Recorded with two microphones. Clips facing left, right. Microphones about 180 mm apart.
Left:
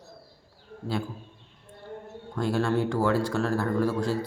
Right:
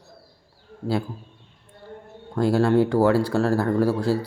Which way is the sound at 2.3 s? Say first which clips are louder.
Right 7 dB; 35° right (ahead or behind).